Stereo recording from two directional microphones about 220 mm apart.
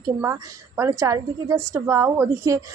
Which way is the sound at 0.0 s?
15° right (ahead or behind).